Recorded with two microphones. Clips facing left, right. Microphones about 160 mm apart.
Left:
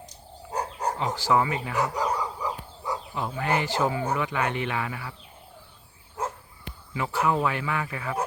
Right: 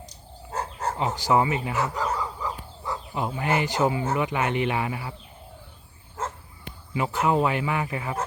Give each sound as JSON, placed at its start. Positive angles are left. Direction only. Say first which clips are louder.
{"t": 0.5, "sound": "a sound", "louder": "left 1 dB", "side_deg": 15}
{"t": 0.9, "sound": "speech", "louder": "right 2 dB", "side_deg": -15}
{"t": 1.7, "sound": "a sound", "louder": "even", "side_deg": 15}
{"t": 3.2, "sound": "speech", "louder": "right 2 dB", "side_deg": -15}
{"t": 6.2, "sound": "dog", "louder": "left 1 dB", "side_deg": 10}
{"t": 6.9, "sound": "speech", "louder": "right 2 dB", "side_deg": -20}